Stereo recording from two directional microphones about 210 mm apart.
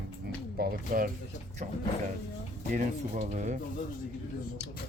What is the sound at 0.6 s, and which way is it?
Speech, 45° right (ahead or behind).